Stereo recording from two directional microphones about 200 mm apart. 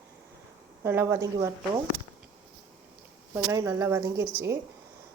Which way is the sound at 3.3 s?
15° right (ahead or behind).